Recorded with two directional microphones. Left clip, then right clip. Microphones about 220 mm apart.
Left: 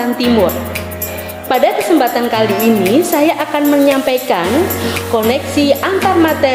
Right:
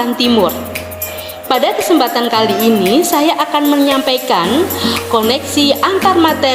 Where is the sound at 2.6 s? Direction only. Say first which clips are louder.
Right 1 dB; centre (ahead or behind).